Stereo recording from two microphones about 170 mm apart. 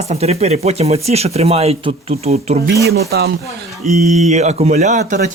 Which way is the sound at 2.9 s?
65° right (ahead or behind).